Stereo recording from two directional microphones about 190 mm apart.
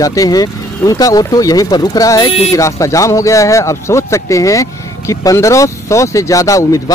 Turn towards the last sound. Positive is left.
turn(degrees=15)  # may be behind; listen again after turning